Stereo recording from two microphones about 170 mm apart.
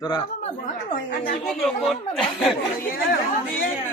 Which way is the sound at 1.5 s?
Centre (ahead or behind).